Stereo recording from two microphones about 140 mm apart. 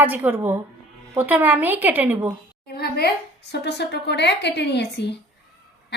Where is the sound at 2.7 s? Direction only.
90° left.